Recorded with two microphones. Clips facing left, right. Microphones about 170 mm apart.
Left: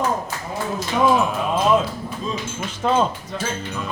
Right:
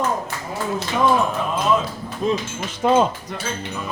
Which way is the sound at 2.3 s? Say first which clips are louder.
Right 8 dB; 75° right (ahead or behind).